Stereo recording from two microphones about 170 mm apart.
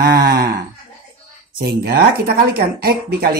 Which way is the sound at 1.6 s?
60° right (ahead or behind).